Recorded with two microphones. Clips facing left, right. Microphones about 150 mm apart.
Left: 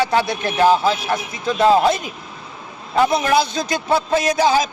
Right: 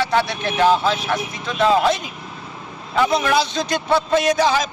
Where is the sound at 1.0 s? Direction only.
40° left (ahead or behind).